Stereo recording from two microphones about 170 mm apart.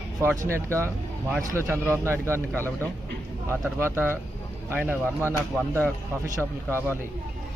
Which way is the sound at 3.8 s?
15° right (ahead or behind).